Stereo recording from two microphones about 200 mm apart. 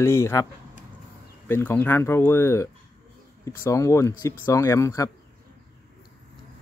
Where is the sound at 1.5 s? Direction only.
10° left (ahead or behind).